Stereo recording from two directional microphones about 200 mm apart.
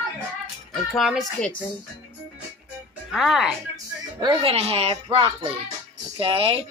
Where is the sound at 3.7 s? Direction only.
20° right (ahead or behind).